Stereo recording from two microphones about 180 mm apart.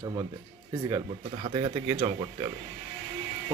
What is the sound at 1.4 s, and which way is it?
Speech, 30° right (ahead or behind).